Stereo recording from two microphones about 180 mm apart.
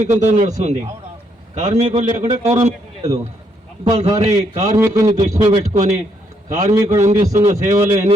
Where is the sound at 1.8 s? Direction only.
40° right (ahead or behind).